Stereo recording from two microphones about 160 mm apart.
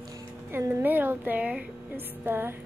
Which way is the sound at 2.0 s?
10° right (ahead or behind).